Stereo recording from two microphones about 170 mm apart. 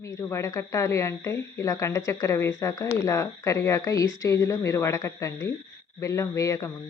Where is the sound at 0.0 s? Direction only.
15° left (ahead or behind).